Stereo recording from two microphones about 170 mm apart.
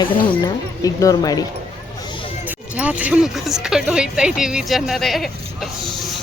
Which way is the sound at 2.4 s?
10° right (ahead or behind).